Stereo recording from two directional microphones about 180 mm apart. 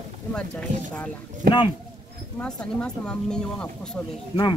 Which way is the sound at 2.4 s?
5° left (ahead or behind).